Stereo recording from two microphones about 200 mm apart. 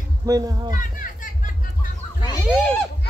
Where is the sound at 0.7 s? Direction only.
40° left (ahead or behind).